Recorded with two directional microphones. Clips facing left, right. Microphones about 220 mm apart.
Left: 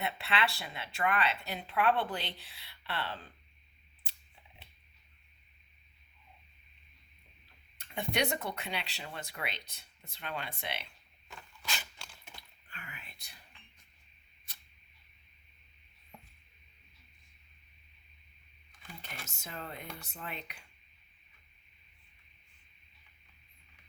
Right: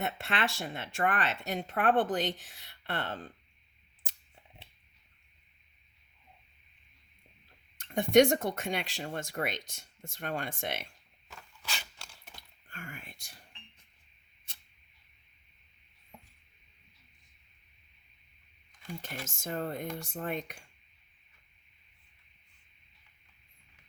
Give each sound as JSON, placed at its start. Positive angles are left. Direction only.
{"t": 0.0, "sound": "speech", "side_deg": -45}
{"t": 7.8, "sound": "speech", "side_deg": -45}
{"t": 11.3, "sound": "a sound", "side_deg": -5}
{"t": 12.4, "sound": "typing", "side_deg": -45}
{"t": 19.4, "sound": "speech", "side_deg": -45}